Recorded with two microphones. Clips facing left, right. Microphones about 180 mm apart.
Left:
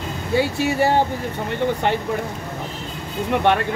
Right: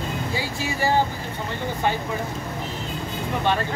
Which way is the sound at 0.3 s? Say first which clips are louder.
Left 8 dB; 65° left (ahead or behind).